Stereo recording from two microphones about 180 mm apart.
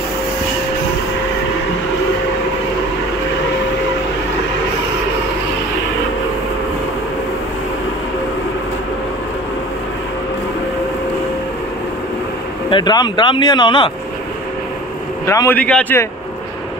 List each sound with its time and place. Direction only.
12.6 s speech: 25° left (ahead or behind)
15.2 s a man's voice: 15° left (ahead or behind)